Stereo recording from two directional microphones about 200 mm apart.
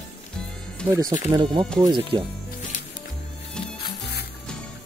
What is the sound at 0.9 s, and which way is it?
Speech, 20° right (ahead or behind).